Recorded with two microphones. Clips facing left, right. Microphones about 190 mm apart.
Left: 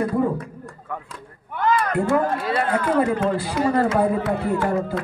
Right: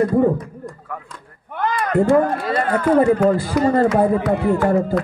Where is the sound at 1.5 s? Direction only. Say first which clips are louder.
Left 1 dB; 50° right (ahead or behind).